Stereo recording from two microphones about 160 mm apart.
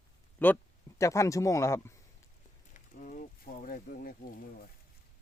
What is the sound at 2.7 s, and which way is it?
Pulleys, 55° left (ahead or behind).